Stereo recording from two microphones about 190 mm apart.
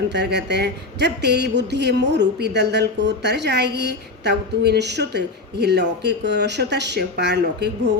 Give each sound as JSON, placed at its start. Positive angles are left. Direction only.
{"t": 0.1, "sound": "speech", "side_deg": -65}